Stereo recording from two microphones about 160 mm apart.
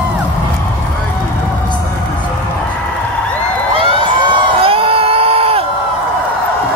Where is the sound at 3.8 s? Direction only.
35° right (ahead or behind).